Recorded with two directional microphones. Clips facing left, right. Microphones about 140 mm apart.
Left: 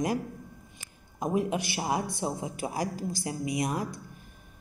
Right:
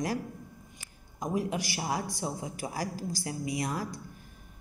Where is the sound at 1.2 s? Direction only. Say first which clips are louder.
Left 3 dB; 25° left (ahead or behind).